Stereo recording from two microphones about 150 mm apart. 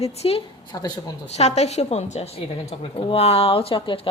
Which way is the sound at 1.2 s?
45° left (ahead or behind).